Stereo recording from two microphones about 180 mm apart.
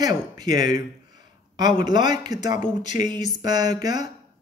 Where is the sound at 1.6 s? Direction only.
25° right (ahead or behind).